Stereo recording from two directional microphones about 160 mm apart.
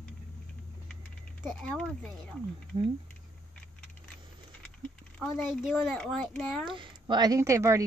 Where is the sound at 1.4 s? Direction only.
5° left (ahead or behind).